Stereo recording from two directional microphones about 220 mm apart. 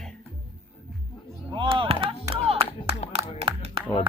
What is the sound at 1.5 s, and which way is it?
Speech, 25° right (ahead or behind).